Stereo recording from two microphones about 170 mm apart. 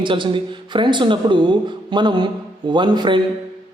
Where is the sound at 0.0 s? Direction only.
30° right (ahead or behind).